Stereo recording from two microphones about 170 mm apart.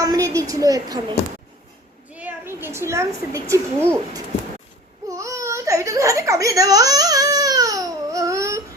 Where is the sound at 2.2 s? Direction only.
10° right (ahead or behind).